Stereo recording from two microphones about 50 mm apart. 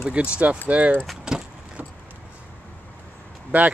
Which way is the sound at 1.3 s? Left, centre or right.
Centre.